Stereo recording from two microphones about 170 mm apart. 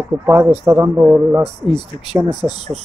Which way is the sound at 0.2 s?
15° right (ahead or behind).